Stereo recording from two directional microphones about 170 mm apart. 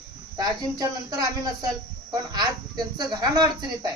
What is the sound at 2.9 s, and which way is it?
Speech, 25° right (ahead or behind).